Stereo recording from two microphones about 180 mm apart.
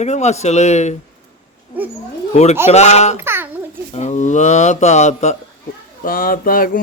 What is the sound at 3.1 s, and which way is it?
Babbling, 10° right (ahead or behind).